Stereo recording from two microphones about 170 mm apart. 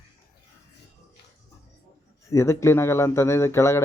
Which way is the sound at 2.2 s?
15° left (ahead or behind).